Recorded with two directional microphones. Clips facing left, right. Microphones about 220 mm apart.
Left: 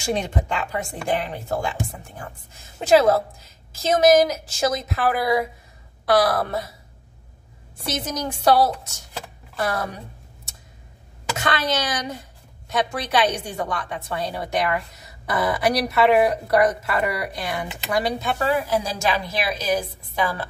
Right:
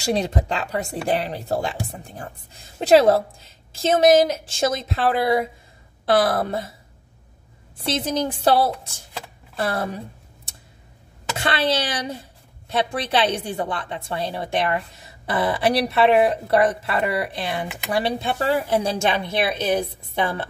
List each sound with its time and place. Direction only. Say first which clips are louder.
0.0 s a woman's voice: right 2 dB; 35° right (ahead or behind)
7.8 s a woman's voice: right 4 dB; 30° right (ahead or behind)
11.3 s a woman's voice: right 2 dB; 30° right (ahead or behind)